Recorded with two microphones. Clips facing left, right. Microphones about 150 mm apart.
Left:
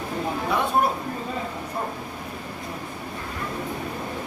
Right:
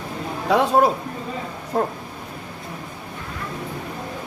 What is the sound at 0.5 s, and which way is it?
Speech, 90° right.